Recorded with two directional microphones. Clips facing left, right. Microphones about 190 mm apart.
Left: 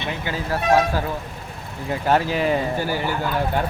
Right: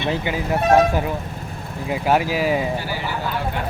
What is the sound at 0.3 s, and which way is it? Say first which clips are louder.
Speech: right 1 dB; 20° right (ahead or behind).